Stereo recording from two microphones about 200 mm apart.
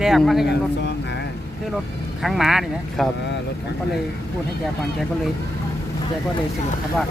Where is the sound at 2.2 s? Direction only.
Centre (ahead or behind).